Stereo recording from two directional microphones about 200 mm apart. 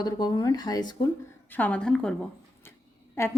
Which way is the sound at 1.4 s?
10° left (ahead or behind).